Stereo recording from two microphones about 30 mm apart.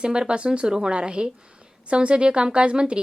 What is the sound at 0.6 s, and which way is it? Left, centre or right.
A woman's voice, right.